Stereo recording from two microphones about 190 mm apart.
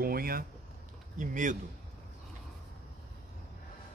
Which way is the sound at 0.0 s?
50° right (ahead or behind).